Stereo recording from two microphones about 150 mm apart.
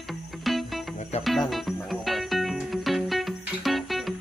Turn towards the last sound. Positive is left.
turn(degrees=0)  # may be behind; listen again after turning